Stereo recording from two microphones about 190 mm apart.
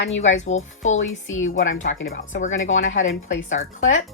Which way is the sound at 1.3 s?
90° left.